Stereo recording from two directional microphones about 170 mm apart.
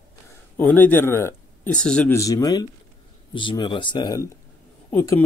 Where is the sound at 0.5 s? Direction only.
10° left (ahead or behind).